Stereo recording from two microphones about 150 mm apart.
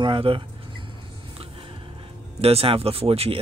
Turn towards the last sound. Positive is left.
turn(degrees=-40)  # may be behind; listen again after turning